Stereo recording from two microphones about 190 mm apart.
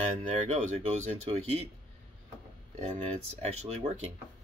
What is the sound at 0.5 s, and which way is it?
Speech, 40° right (ahead or behind).